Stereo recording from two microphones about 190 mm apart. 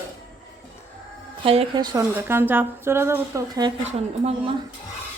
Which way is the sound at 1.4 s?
30° right (ahead or behind).